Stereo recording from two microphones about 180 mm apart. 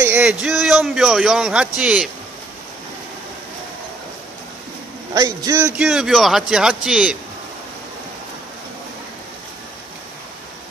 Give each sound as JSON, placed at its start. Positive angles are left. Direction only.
{"t": 0.0, "sound": "a man's voice", "side_deg": -10}
{"t": 5.1, "sound": "a man's voice", "side_deg": -20}
{"t": 5.7, "sound": "a man's voice", "side_deg": -5}